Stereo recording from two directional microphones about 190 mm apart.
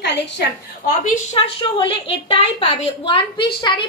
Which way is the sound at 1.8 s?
25° left (ahead or behind).